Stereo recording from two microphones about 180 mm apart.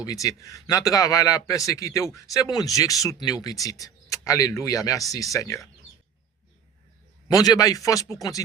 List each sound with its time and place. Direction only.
0.0 s a man's voice: 20° left (ahead or behind)
7.3 s a man's voice: 20° left (ahead or behind)